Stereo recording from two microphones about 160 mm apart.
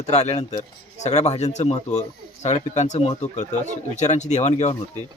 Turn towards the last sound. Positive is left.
turn(degrees=45)  # may be behind; listen again after turning